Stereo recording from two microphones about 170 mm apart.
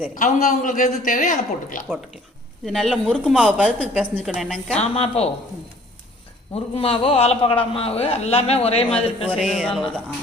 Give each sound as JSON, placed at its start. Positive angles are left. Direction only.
{"t": 0.1, "sound": "a man's voice", "side_deg": 50}
{"t": 2.6, "sound": "speech", "side_deg": 0}
{"t": 4.8, "sound": "a man's voice", "side_deg": 35}
{"t": 6.5, "sound": "a man's voice", "side_deg": 35}
{"t": 9.4, "sound": "speech", "side_deg": 0}